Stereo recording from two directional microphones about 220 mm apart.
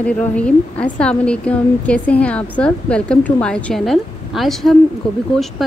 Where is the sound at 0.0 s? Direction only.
5° left (ahead or behind).